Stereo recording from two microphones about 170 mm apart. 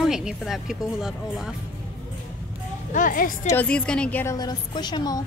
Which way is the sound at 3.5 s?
10° left (ahead or behind).